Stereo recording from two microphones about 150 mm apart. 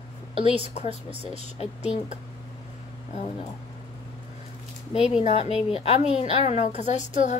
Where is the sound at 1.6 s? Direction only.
45° left (ahead or behind).